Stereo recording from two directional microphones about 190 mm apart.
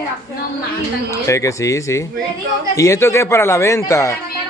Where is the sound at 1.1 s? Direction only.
15° left (ahead or behind).